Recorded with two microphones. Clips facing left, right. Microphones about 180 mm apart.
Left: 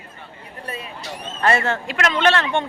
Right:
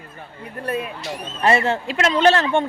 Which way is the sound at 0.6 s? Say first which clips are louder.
Right 8 dB; 55° right (ahead or behind).